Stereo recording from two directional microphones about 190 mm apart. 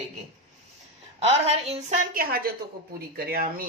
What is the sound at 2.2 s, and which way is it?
Speech, 50° right (ahead or behind).